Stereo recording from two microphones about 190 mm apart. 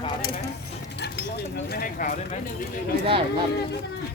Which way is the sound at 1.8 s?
45° left (ahead or behind).